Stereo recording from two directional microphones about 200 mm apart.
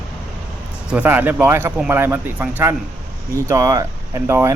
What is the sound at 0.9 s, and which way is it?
Speech, 10° right (ahead or behind).